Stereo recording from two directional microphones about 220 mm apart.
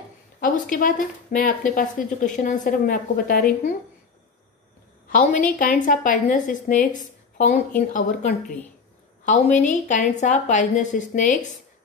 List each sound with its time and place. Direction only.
0.4 s speech: 40° left (ahead or behind)
5.6 s speech: 35° left (ahead or behind)
7.0 s a sound: 35° left (ahead or behind)
7.9 s speech: 35° left (ahead or behind)